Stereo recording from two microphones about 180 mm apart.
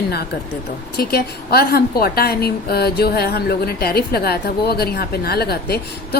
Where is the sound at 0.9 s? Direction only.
60° left (ahead or behind).